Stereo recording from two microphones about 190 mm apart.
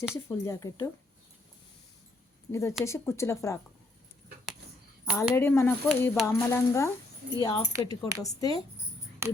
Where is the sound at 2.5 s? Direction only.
15° left (ahead or behind).